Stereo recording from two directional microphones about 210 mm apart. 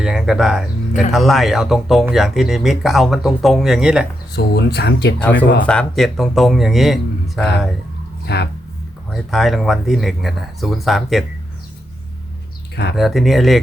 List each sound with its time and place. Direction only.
0.0 s speech: centre (ahead or behind)
4.4 s speech: 55° left (ahead or behind)
5.6 s speech: 5° left (ahead or behind)
8.3 s speech: 55° left (ahead or behind)
9.1 s speech: centre (ahead or behind)
13.0 s speech: centre (ahead or behind)